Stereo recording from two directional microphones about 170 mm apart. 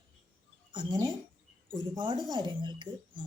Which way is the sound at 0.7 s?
25° right (ahead or behind).